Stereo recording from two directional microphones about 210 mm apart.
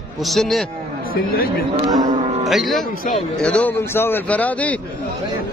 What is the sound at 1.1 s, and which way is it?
Speech, 45° left (ahead or behind).